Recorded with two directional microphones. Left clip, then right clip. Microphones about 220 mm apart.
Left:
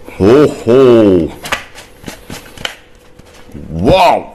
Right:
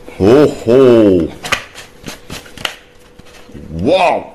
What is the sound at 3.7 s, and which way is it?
Speech, 20° left (ahead or behind).